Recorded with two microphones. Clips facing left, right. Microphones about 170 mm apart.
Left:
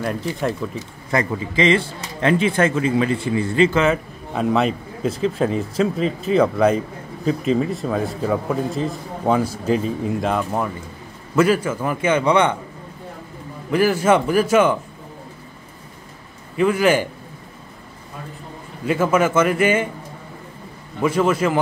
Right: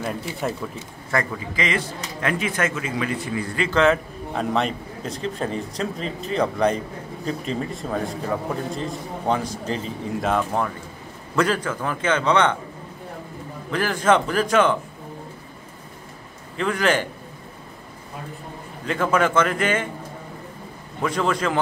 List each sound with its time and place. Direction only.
0.0 s a man's voice: 5° right (ahead or behind)
1.1 s speech: 25° left (ahead or behind)
3.7 s a man's voice: 5° left (ahead or behind)
13.7 s a man's voice: 10° left (ahead or behind)
16.5 s a man's voice: 10° left (ahead or behind)
18.9 s a man's voice: 5° left (ahead or behind)
21.0 s a man's voice: 5° left (ahead or behind)